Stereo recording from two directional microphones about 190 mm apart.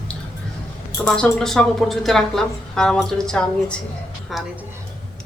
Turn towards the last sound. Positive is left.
turn(degrees=0)  # may be behind; listen again after turning